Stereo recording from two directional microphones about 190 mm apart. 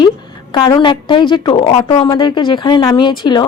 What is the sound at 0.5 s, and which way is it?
A woman's voice, 20° left (ahead or behind).